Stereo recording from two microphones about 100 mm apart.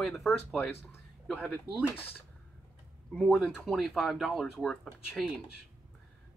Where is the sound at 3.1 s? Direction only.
5° left (ahead or behind).